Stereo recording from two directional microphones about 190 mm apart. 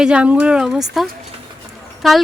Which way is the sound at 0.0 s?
5° right (ahead or behind).